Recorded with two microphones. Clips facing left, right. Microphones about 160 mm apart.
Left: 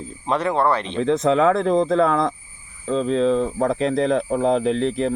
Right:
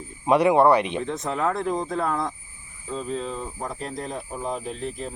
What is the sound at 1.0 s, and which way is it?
Speech, 90° left.